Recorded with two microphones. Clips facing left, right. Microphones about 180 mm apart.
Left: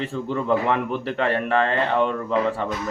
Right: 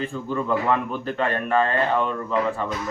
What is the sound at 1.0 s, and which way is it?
Speech, 80° left.